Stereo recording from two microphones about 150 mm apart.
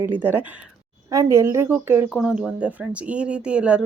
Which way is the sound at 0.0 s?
10° right (ahead or behind).